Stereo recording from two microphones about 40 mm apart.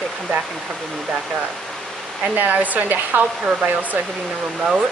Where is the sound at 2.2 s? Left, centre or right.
Right.